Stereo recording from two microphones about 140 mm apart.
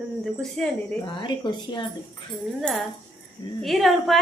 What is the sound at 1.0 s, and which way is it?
Speech, 35° left (ahead or behind).